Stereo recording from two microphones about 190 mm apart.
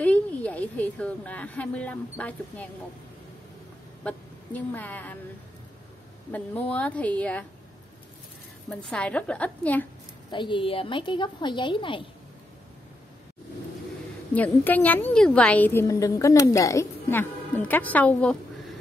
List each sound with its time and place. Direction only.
0.0 s speech: 10° left (ahead or behind)
4.0 s a woman's voice: 10° left (ahead or behind)
6.3 s a woman's voice: 10° left (ahead or behind)
8.6 s a woman's voice: 5° left (ahead or behind)
10.3 s a woman's voice: 25° left (ahead or behind)
14.3 s a woman's voice: 10° left (ahead or behind)